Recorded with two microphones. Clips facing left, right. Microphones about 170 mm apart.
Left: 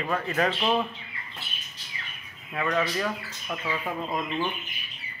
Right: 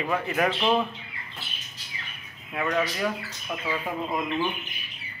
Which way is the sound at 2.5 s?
5° right (ahead or behind).